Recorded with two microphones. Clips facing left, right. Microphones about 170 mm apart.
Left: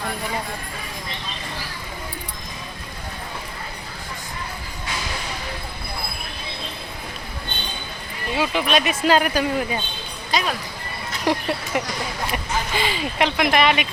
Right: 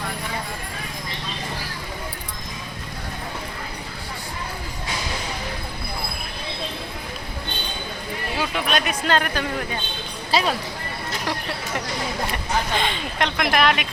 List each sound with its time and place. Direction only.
8.4 s speech: centre (ahead or behind)
10.3 s speech: 30° right (ahead or behind)
11.3 s speech: 15° left (ahead or behind)
12.7 s speech: 5° left (ahead or behind)